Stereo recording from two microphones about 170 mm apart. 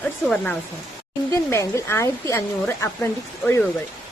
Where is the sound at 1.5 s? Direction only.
15° left (ahead or behind).